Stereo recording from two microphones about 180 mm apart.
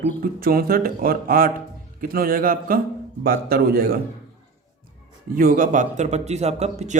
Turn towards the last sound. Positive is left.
turn(degrees=-40)  # may be behind; listen again after turning